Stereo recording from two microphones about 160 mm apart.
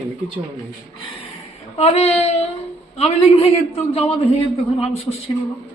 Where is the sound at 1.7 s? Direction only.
40° left (ahead or behind).